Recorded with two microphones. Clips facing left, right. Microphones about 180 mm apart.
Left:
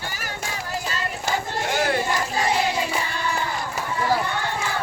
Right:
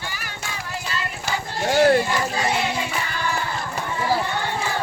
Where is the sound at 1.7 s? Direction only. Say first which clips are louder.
Right 8 dB; 45° right (ahead or behind).